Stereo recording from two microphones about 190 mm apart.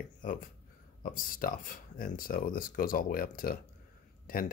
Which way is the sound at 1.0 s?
45° left (ahead or behind).